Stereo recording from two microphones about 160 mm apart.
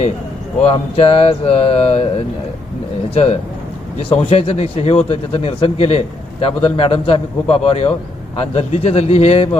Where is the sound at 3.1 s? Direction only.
35° left (ahead or behind).